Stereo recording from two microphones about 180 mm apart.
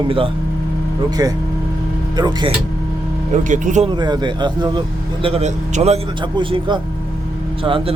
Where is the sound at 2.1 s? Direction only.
25° right (ahead or behind).